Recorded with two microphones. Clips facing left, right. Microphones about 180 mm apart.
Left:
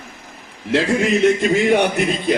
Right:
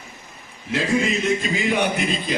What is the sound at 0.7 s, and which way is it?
A man's voice, 65° left (ahead or behind).